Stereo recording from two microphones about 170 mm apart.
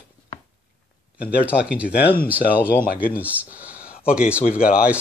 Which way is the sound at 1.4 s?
5° right (ahead or behind).